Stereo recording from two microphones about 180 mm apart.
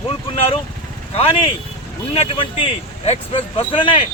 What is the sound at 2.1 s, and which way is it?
Speech, 30° left (ahead or behind).